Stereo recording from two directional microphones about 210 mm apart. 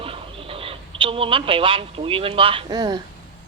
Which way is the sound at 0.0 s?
25° right (ahead or behind).